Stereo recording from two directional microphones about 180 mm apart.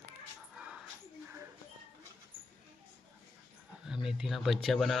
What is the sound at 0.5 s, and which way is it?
Dog, 5° right (ahead or behind).